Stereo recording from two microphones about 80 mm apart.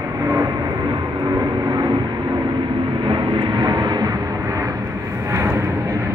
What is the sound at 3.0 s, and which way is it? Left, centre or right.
Vehicle, right.